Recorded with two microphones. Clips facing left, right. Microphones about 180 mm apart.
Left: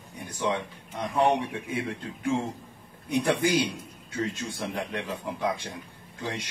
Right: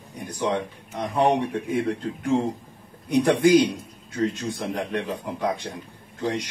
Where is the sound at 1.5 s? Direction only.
40° right (ahead or behind).